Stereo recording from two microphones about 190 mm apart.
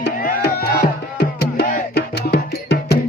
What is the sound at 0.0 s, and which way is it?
Music, 55° left (ahead or behind).